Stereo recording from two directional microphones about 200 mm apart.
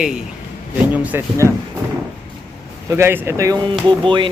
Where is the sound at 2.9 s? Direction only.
10° right (ahead or behind).